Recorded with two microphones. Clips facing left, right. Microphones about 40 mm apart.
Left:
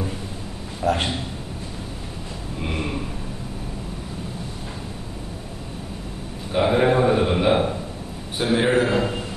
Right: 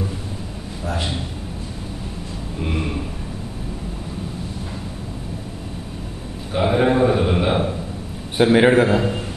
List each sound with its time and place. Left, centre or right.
0.8 s a man's voice: left
6.5 s a sound: centre
8.5 s a man's voice: right
8.9 s a man's voice: centre